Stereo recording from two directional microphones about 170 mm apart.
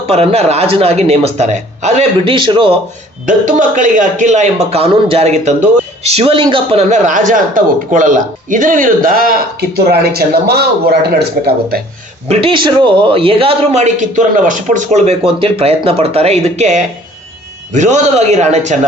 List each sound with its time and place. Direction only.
0.0 s a man's voice: 35° right (ahead or behind)
3.2 s a man's voice: 50° right (ahead or behind); by 11.8 s 65° right (ahead or behind)
12.3 s a man's voice: 35° right (ahead or behind)